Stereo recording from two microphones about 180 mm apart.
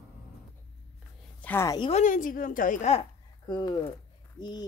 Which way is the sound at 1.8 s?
35° left (ahead or behind).